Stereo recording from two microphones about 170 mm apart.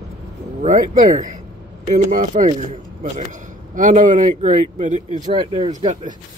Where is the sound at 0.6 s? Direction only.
45° right (ahead or behind).